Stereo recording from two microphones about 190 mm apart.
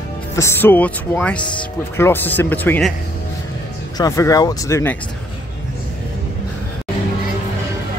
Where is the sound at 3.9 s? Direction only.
20° left (ahead or behind).